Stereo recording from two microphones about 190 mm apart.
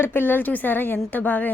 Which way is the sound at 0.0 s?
10° left (ahead or behind).